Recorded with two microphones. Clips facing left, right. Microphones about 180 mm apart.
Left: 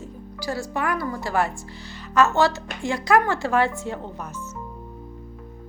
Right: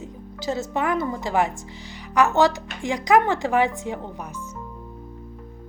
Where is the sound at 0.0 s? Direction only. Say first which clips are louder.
Right 2 dB; 20° right (ahead or behind).